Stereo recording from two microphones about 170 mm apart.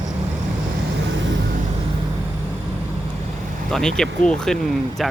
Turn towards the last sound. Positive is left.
turn(degrees=0)  # may be behind; listen again after turning